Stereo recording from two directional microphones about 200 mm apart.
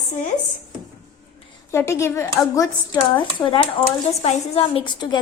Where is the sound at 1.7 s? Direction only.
15° left (ahead or behind).